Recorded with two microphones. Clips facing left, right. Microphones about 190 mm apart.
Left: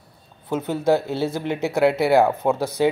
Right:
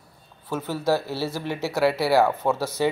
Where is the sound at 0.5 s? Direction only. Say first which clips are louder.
Left 4 dB; 20° left (ahead or behind).